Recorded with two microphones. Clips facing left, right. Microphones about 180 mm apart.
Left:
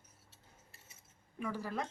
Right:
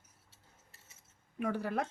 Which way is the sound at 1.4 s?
65° right (ahead or behind).